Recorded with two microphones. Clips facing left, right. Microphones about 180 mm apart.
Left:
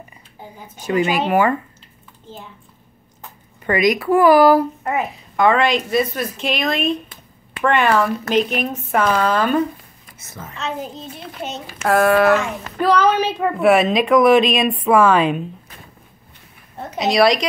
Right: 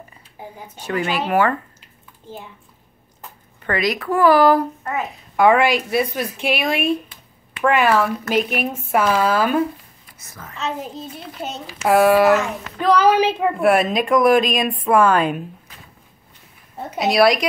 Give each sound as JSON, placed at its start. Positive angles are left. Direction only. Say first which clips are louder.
{"t": 0.7, "sound": "a woman's voice", "louder": "left 4 dB", "side_deg": 10}
{"t": 3.6, "sound": "a woman's voice", "louder": "left 4 dB", "side_deg": 15}
{"t": 5.3, "sound": "speech", "louder": "right 1 dB", "side_deg": -10}
{"t": 10.4, "sound": "a child's voice", "louder": "left 3 dB", "side_deg": 20}
{"t": 11.8, "sound": "a woman's voice", "louder": "right 1 dB", "side_deg": -15}
{"t": 16.9, "sound": "a woman's voice", "louder": "even", "side_deg": -5}